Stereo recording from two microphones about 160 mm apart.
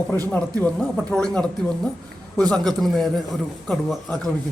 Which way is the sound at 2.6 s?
Centre (ahead or behind).